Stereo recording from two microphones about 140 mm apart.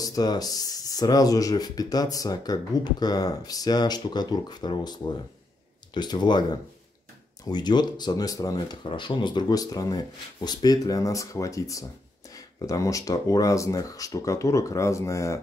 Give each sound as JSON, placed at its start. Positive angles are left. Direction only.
{"t": 0.0, "sound": "speech", "side_deg": 25}